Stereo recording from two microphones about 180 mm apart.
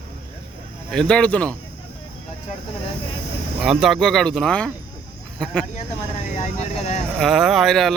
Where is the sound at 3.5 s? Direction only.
Centre (ahead or behind).